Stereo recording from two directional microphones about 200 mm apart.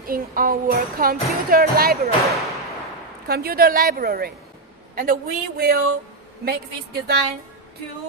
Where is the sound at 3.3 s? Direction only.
50° right (ahead or behind).